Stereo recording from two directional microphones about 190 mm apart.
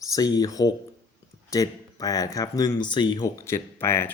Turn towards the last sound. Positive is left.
turn(degrees=10)  # may be behind; listen again after turning